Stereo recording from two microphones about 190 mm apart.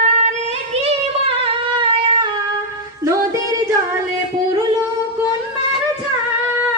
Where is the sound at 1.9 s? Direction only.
25° right (ahead or behind).